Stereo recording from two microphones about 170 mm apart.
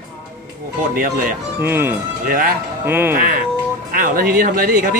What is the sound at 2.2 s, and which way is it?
Speech, 55° right (ahead or behind).